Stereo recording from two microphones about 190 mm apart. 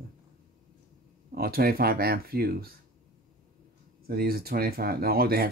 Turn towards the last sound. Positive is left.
turn(degrees=-55)  # may be behind; listen again after turning